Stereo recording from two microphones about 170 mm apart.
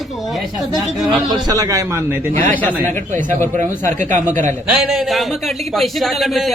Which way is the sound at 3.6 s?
45° right (ahead or behind).